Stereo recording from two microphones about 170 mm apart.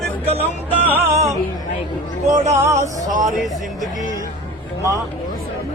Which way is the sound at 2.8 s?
45° right (ahead or behind).